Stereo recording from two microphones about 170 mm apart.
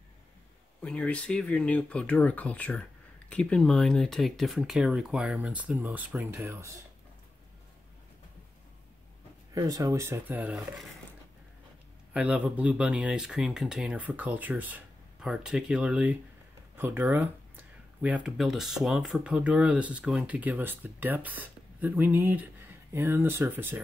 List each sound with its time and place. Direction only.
0.8 s speech: 5° left (ahead or behind); by 6.7 s 15° right (ahead or behind)
9.5 s speech: 20° right (ahead or behind)
12.1 s speech: 10° right (ahead or behind)